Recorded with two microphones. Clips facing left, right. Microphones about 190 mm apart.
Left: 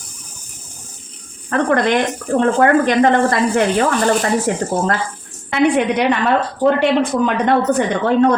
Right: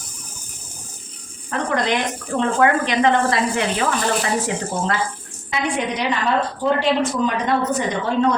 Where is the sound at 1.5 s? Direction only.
60° left (ahead or behind).